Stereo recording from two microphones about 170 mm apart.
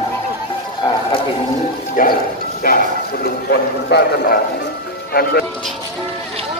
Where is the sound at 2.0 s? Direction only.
55° left (ahead or behind).